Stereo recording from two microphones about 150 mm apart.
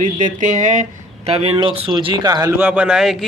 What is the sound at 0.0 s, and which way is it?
Speech, 55° right (ahead or behind).